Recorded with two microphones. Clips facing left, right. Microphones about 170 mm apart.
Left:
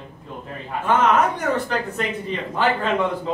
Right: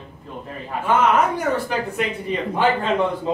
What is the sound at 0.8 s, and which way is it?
Speech, 10° right (ahead or behind).